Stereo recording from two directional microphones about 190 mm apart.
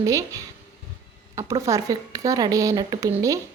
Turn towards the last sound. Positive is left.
turn(degrees=-15)  # may be behind; listen again after turning